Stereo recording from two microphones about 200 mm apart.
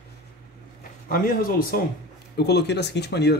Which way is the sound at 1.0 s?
45° left (ahead or behind).